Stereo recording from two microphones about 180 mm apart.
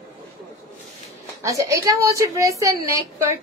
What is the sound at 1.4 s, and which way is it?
A woman's voice, 20° right (ahead or behind).